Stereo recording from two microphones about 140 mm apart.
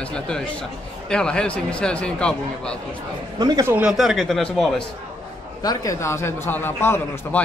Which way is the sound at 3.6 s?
10° right (ahead or behind).